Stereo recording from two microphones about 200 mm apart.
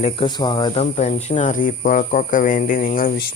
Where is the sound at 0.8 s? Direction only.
35° left (ahead or behind).